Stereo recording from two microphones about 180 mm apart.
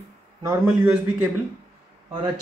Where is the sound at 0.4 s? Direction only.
10° right (ahead or behind).